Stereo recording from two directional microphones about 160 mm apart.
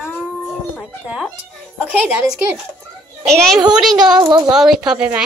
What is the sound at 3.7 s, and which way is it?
Speech, 5° right (ahead or behind).